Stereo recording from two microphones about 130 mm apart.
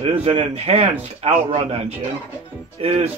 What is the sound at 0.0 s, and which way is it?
Speech, 55° right (ahead or behind).